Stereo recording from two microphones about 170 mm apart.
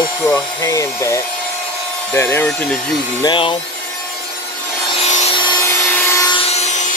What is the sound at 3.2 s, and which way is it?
Speech, 30° left (ahead or behind).